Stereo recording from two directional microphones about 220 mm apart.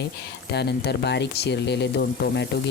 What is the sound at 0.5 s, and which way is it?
Frying, 50° left (ahead or behind).